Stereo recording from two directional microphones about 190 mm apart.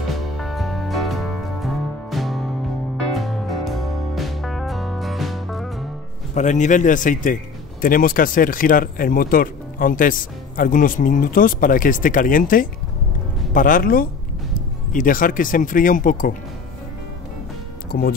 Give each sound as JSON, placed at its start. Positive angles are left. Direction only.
{"t": 0.1, "sound": "music", "side_deg": 0}
{"t": 6.3, "sound": "a man's voice", "side_deg": 40}
{"t": 17.9, "sound": "speech", "side_deg": 55}